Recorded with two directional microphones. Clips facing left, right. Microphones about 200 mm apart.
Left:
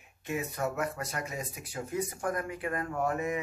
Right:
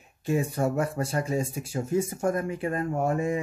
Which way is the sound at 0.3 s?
30° right (ahead or behind).